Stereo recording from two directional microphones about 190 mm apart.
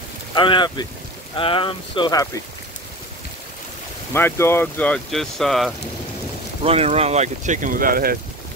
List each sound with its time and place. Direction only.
0.3 s speech: 25° left (ahead or behind)
4.1 s speech: 10° left (ahead or behind)
6.6 s speech: 30° right (ahead or behind); by 8.2 s 50° right (ahead or behind)